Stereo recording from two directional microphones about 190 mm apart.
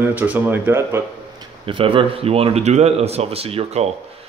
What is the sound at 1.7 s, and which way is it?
Speech, 25° right (ahead or behind).